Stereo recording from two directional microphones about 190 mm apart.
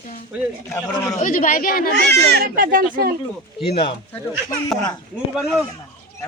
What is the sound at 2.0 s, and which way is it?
Speech, 60° right (ahead or behind).